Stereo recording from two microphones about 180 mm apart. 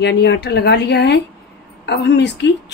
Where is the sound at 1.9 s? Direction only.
80° left.